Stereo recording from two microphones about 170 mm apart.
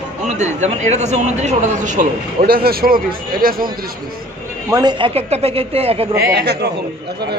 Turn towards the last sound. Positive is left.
turn(degrees=-75)  # may be behind; listen again after turning